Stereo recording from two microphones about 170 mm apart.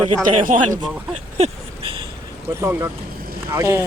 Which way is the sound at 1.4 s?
30° right (ahead or behind).